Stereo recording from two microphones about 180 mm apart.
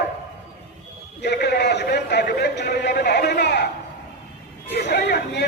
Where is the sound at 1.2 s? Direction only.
70° left (ahead or behind).